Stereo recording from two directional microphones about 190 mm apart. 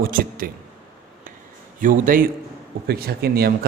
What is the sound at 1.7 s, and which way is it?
Speech, 45° right (ahead or behind).